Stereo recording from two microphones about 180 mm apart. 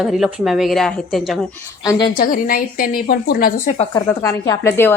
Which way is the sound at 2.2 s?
50° left (ahead or behind).